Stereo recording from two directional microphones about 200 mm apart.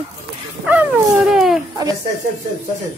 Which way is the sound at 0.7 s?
10° right (ahead or behind).